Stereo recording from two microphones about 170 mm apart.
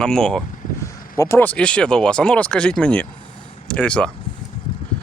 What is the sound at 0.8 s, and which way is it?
Speech, 15° left (ahead or behind).